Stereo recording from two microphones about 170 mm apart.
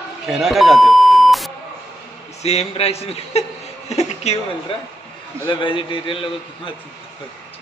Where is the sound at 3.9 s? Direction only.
40° left (ahead or behind).